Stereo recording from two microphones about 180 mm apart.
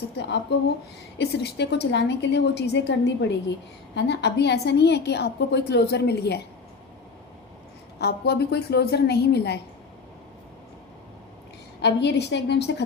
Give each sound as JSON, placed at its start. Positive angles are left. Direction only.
{"t": 0.2, "sound": "a woman's voice", "side_deg": 75}
{"t": 7.9, "sound": "a woman's voice", "side_deg": 65}
{"t": 11.8, "sound": "a woman's voice", "side_deg": 70}